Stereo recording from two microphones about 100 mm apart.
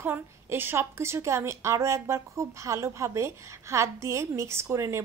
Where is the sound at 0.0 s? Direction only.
20° right (ahead or behind).